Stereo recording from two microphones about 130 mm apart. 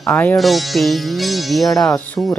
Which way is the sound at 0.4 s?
Centre (ahead or behind).